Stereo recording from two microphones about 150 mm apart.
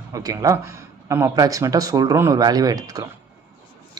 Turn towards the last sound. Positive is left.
turn(degrees=-25)  # may be behind; listen again after turning